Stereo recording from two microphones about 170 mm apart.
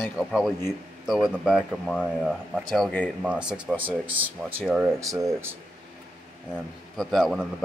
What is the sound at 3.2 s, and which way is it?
A man's voice, 5° right (ahead or behind).